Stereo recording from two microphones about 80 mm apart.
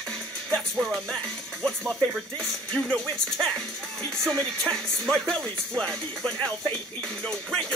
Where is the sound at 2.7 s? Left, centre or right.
Centre.